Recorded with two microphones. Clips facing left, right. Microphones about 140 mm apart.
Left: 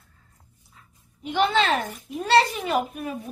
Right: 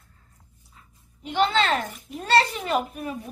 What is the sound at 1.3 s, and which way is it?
A woman's voice, 10° left (ahead or behind).